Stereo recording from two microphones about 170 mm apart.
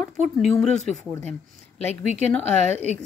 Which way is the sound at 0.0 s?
5° left (ahead or behind).